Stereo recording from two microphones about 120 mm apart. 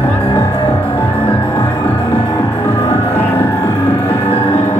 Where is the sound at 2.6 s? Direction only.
20° left (ahead or behind).